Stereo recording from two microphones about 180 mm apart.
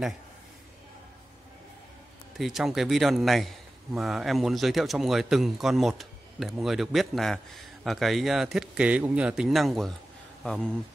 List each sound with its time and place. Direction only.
2.3 s a man's voice: centre (ahead or behind)